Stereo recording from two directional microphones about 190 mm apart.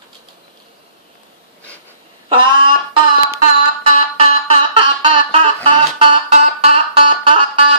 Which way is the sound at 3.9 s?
35° right (ahead or behind).